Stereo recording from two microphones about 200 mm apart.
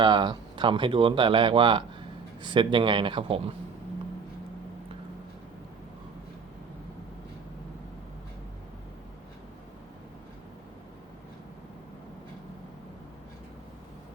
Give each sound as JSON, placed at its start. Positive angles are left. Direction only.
{"t": 0.0, "sound": "speech", "side_deg": -20}